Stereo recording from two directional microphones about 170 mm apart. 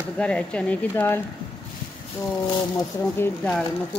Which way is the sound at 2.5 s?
25° left (ahead or behind).